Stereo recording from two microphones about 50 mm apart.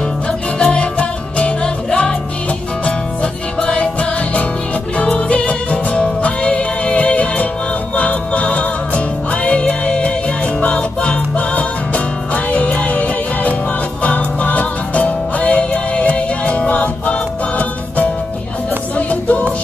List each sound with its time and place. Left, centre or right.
0.6 s music: left